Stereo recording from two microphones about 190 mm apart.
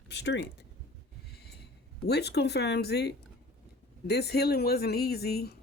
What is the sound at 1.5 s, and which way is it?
Speech, 60° left (ahead or behind).